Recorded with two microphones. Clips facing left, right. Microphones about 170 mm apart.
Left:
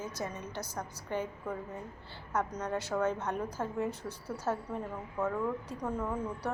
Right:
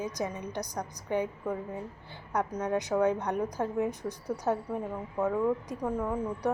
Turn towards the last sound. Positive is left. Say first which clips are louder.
# right 4 dB
turn(degrees=-10)  # may be behind; listen again after turning